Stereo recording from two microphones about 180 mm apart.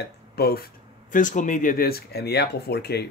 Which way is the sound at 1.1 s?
45° left (ahead or behind).